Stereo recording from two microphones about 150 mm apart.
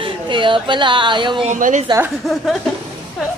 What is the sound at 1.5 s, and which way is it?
Speech, 55° right (ahead or behind).